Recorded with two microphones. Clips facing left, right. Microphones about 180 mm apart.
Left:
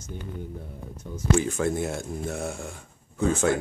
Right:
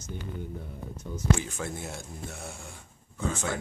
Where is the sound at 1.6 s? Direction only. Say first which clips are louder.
Left 10 dB; 60° left (ahead or behind).